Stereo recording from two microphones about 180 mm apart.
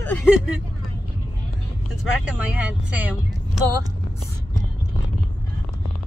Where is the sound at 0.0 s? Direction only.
5° left (ahead or behind).